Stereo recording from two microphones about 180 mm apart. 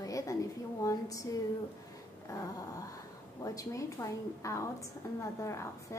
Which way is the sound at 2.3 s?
20° left (ahead or behind).